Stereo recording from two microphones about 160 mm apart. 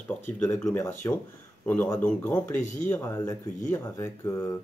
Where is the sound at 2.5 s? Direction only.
55° left (ahead or behind).